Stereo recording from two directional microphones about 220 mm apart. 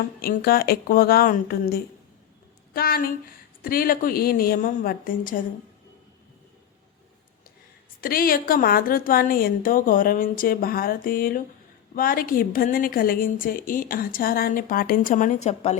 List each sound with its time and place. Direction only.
0.2 s a woman's voice: 45° left (ahead or behind)
8.0 s a woman's voice: 40° left (ahead or behind)